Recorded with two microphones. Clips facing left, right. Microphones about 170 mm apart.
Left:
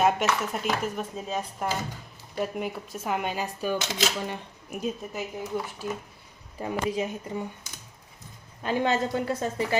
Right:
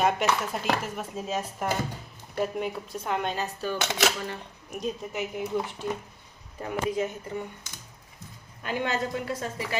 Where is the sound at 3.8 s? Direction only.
60° right (ahead or behind).